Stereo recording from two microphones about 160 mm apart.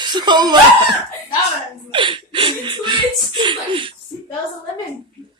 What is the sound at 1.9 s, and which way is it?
Speech, 30° right (ahead or behind).